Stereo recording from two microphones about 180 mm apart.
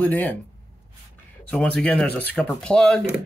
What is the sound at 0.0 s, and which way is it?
Speech, 10° left (ahead or behind).